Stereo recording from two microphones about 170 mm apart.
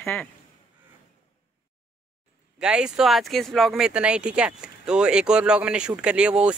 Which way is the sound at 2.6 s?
5° right (ahead or behind).